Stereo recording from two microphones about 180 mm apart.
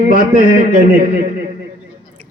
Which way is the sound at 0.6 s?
50° right (ahead or behind).